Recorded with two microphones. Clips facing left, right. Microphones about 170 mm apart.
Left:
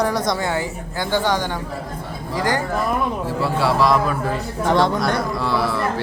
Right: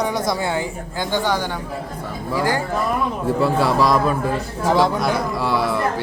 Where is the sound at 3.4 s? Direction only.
45° right (ahead or behind).